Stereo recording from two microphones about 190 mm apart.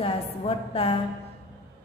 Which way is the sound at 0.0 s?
30° left (ahead or behind).